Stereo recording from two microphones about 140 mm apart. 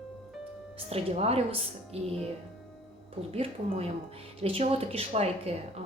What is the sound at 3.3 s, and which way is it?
A woman's voice, 45° right (ahead or behind).